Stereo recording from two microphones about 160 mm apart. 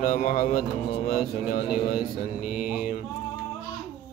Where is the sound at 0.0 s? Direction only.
60° left (ahead or behind).